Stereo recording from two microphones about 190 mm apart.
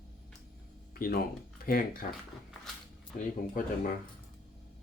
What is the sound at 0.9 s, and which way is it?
Speech, 50° left (ahead or behind).